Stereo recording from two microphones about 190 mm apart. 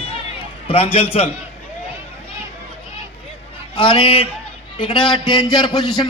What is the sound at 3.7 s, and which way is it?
A man's voice, 25° left (ahead or behind).